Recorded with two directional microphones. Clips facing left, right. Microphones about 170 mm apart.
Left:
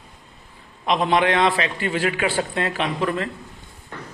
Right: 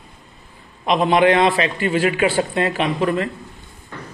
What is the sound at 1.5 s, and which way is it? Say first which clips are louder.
A man's voice: right 4 dB; 20° right (ahead or behind).